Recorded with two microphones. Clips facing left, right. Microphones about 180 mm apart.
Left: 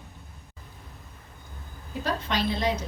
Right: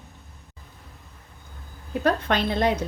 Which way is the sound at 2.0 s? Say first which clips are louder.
Right 5 dB; 55° right (ahead or behind).